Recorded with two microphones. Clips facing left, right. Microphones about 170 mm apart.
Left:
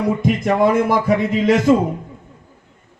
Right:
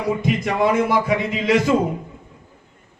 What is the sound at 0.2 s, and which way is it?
Speech, 50° left (ahead or behind).